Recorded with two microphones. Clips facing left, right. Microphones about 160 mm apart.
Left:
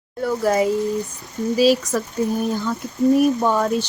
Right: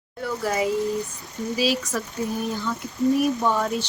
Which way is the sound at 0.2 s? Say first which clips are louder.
Left 6 dB; 45° left (ahead or behind).